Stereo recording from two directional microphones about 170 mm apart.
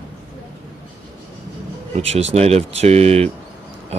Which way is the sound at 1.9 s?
40° right (ahead or behind).